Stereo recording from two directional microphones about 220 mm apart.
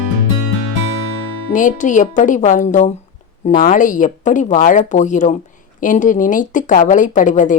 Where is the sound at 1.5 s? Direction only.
35° left (ahead or behind).